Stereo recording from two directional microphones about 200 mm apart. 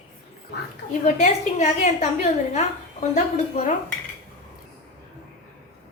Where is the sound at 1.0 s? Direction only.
35° left (ahead or behind).